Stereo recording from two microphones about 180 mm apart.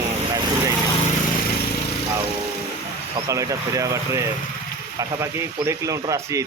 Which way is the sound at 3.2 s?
15° right (ahead or behind).